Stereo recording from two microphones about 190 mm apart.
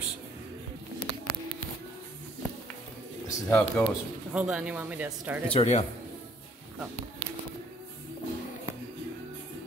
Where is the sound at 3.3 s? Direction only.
15° left (ahead or behind).